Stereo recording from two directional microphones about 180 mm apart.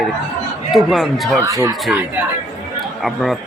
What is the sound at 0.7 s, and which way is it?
Speech, centre (ahead or behind).